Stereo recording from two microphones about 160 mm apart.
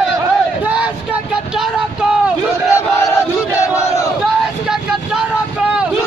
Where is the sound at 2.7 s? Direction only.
20° left (ahead or behind).